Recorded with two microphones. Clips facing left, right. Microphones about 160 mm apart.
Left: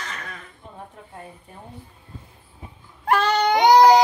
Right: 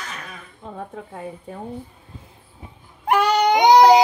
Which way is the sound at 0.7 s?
90° right.